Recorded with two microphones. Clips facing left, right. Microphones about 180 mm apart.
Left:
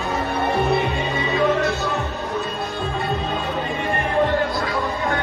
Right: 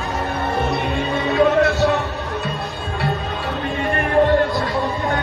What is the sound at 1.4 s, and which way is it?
Music, 65° right (ahead or behind).